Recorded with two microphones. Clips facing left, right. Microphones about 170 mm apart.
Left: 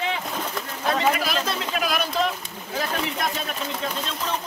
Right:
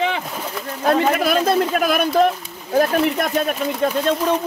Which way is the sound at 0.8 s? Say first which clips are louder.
Right 6 dB; 50° right (ahead or behind).